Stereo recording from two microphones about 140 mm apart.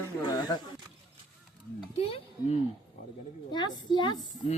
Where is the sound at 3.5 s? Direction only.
30° left (ahead or behind).